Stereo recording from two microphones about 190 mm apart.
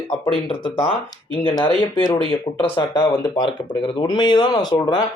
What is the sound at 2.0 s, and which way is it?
Speech, 20° left (ahead or behind).